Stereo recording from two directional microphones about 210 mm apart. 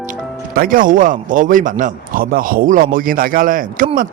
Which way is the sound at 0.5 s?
40° right (ahead or behind).